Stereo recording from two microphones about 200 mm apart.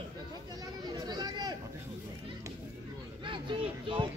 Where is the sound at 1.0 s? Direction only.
20° right (ahead or behind).